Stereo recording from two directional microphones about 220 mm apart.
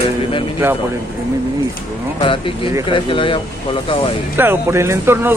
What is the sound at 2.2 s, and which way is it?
Speech, 25° left (ahead or behind).